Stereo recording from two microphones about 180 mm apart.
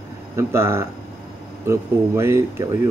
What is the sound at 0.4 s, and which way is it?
Speech, 15° right (ahead or behind).